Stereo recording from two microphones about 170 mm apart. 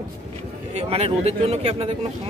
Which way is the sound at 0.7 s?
35° right (ahead or behind).